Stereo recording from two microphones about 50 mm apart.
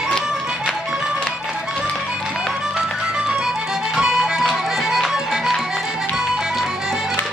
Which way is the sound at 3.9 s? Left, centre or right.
Centre.